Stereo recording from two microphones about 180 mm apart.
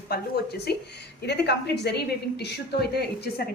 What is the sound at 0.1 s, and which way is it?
A woman's voice, 65° left (ahead or behind).